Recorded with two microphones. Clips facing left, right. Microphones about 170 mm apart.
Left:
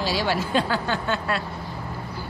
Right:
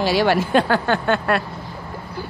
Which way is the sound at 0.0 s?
60° right (ahead or behind).